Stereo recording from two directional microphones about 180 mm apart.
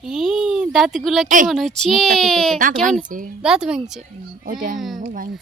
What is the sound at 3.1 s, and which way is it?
Speech, 50° right (ahead or behind).